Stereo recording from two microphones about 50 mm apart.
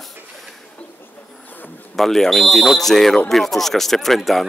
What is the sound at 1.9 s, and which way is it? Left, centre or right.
Speech, centre.